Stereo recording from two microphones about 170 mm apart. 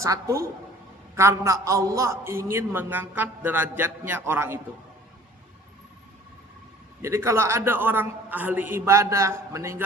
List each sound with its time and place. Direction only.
0.0 s a man's voice: 20° right (ahead or behind)
7.0 s a man's voice: 15° right (ahead or behind)